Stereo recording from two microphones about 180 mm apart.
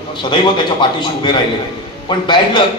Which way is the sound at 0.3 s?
25° left (ahead or behind).